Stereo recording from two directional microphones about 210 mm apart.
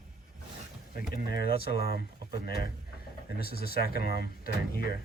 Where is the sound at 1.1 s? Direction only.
45° left (ahead or behind).